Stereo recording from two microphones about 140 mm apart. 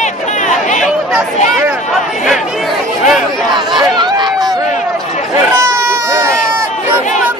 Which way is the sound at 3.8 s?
30° right (ahead or behind).